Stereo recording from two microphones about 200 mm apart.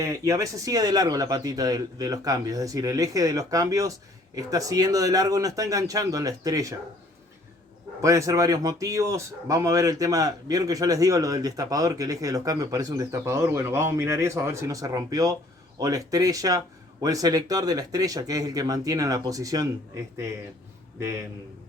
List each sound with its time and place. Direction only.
0.0 s speech: 15° right (ahead or behind)
8.0 s speech: 15° right (ahead or behind)